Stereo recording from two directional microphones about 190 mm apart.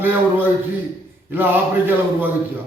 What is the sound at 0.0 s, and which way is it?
Speech, 10° right (ahead or behind).